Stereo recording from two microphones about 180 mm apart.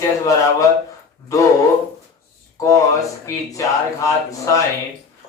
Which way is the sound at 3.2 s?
15° left (ahead or behind).